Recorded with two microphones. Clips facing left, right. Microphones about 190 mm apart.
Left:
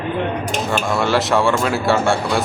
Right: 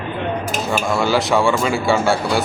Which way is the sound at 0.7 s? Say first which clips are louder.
Right 1 dB; centre (ahead or behind).